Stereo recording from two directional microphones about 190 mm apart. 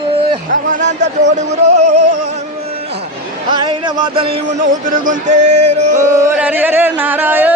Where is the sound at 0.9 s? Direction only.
65° right (ahead or behind).